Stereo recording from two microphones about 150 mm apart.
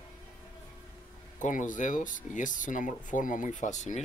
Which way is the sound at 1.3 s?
60° left (ahead or behind).